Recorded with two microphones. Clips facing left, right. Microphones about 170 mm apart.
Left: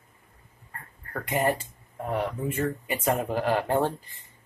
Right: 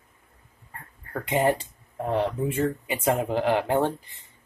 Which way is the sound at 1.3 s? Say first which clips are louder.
Right 3 dB; 25° right (ahead or behind).